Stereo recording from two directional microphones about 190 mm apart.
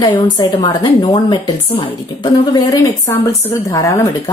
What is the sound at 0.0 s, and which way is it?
A woman's voice, 20° left (ahead or behind).